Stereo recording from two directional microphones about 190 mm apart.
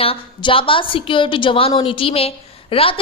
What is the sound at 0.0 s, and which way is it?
A woman's voice, 30° left (ahead or behind).